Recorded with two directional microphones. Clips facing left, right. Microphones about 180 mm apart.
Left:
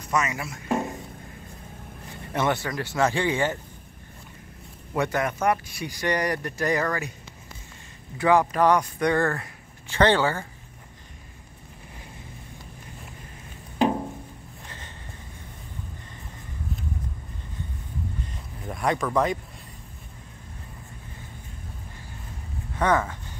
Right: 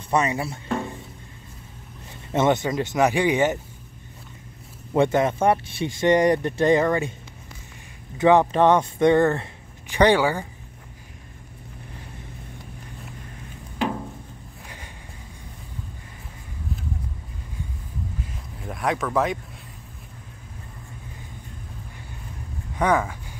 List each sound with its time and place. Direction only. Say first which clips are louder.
0.1 s speech: right 4 dB; 30° right (ahead or behind)
2.3 s speech: right 5 dB; 20° right (ahead or behind)
4.9 s speech: right 6 dB; 25° right (ahead or behind)
8.2 s speech: right 4 dB; 25° right (ahead or behind)
18.2 s a sound: right 1 dB; centre (ahead or behind)
22.8 s speech: right 2 dB; 10° right (ahead or behind)